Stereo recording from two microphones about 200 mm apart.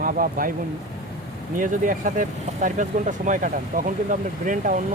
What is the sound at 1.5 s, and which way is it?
Speech, 40° right (ahead or behind).